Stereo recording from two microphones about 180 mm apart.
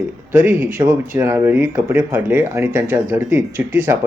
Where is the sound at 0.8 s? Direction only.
15° right (ahead or behind).